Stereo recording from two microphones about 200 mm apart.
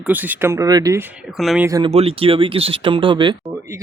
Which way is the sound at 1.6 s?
20° right (ahead or behind).